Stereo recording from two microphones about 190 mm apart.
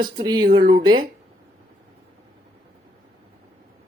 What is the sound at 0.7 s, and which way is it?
Speech, 25° right (ahead or behind).